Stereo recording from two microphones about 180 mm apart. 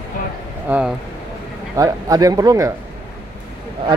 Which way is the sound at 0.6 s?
10° right (ahead or behind).